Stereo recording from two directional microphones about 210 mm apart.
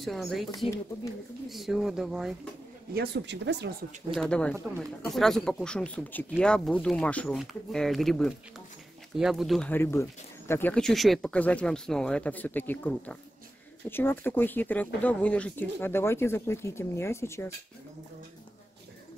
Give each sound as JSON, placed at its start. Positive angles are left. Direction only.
{"t": 0.0, "sound": "speech", "side_deg": 0}
{"t": 1.5, "sound": "speech", "side_deg": 0}
{"t": 2.9, "sound": "speech", "side_deg": -50}
{"t": 4.1, "sound": "speech", "side_deg": 5}